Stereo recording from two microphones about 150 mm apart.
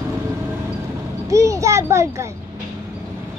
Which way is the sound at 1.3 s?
20° right (ahead or behind).